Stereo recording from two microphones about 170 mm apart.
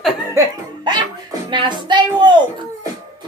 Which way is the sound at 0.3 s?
25° right (ahead or behind).